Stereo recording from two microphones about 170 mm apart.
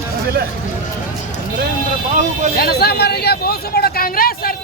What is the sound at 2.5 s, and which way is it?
Speech, 65° left (ahead or behind).